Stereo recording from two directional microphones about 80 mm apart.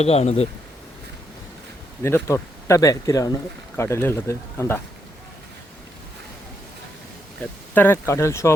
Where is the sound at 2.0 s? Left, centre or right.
Left.